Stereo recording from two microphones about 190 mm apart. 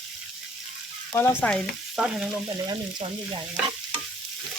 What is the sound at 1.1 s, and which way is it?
Frying, 10° left (ahead or behind).